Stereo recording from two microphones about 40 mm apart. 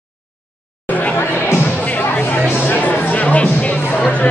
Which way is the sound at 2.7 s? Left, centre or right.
Left.